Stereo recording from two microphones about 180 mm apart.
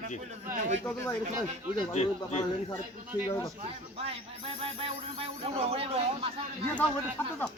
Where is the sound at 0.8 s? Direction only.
10° left (ahead or behind).